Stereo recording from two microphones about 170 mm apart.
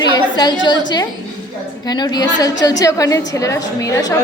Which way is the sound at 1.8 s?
25° left (ahead or behind).